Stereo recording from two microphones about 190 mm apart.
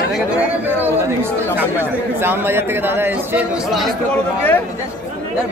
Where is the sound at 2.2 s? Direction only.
10° right (ahead or behind).